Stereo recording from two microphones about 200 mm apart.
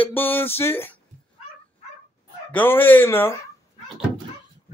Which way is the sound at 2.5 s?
10° left (ahead or behind).